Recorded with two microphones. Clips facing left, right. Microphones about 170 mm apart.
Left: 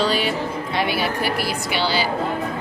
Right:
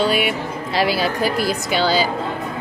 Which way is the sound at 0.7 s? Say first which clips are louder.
Right 4 dB; 90° right.